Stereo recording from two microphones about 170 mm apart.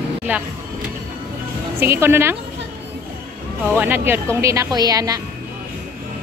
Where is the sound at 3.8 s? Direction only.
10° right (ahead or behind).